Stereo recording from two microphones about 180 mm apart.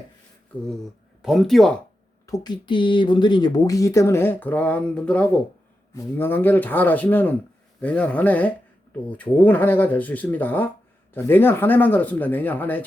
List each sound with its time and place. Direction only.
1.2 s speech: centre (ahead or behind)
2.2 s speech: 20° left (ahead or behind)